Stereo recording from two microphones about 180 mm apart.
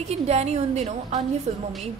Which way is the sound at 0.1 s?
35° right (ahead or behind).